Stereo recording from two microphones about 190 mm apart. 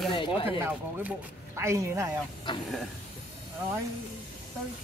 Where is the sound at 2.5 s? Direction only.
25° left (ahead or behind).